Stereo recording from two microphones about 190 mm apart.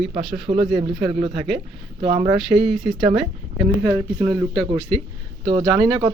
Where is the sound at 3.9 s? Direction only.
20° right (ahead or behind).